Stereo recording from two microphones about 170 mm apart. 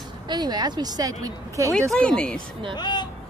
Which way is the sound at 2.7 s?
25° left (ahead or behind).